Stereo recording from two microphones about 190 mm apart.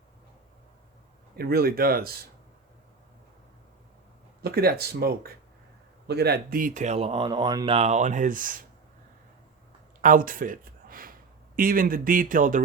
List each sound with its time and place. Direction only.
1.4 s speech: 55° right (ahead or behind)
4.4 s speech: 55° right (ahead or behind)
10.0 s speech: 45° right (ahead or behind)